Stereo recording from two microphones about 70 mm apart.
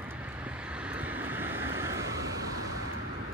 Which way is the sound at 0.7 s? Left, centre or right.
Centre.